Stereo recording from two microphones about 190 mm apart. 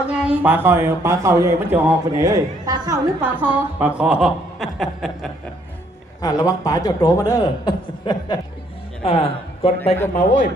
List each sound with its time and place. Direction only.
0.1 s speech: 5° right (ahead or behind)
6.2 s a man's voice: 20° left (ahead or behind)
10.2 s a man's voice: 40° left (ahead or behind)